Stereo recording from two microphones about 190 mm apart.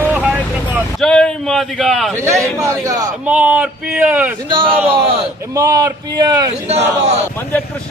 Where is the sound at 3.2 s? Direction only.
5° right (ahead or behind).